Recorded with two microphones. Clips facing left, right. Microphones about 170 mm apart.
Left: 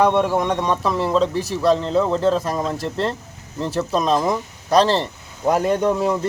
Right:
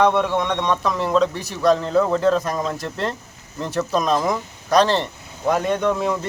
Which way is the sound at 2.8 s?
30° left (ahead or behind).